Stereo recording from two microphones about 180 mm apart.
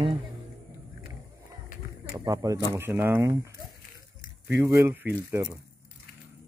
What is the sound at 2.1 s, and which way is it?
Speech, 20° right (ahead or behind).